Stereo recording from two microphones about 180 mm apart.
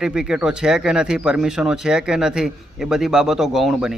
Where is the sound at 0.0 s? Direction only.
5° right (ahead or behind).